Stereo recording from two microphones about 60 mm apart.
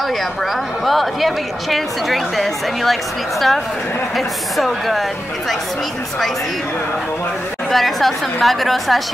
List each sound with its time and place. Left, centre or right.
0.8 s a woman's voice: centre
7.7 s a woman's voice: centre